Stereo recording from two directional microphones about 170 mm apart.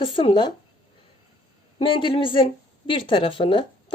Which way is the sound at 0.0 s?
30° left (ahead or behind).